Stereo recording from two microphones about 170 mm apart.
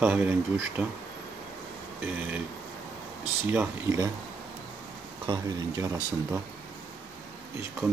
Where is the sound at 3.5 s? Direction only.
15° right (ahead or behind).